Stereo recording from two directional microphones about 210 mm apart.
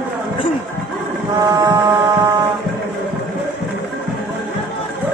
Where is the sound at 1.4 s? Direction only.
15° right (ahead or behind).